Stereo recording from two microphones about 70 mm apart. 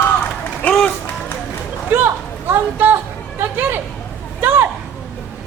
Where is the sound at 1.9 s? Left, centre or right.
Right.